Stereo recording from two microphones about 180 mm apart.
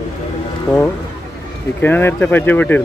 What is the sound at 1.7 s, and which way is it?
Speech, 10° left (ahead or behind).